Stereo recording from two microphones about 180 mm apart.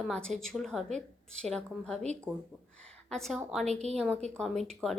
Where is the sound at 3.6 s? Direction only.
40° right (ahead or behind).